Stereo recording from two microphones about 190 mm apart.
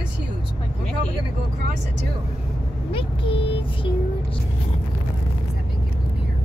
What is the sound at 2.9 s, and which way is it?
Speech, 30° left (ahead or behind).